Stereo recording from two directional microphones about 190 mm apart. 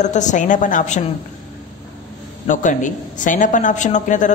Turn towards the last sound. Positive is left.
turn(degrees=40)  # may be behind; listen again after turning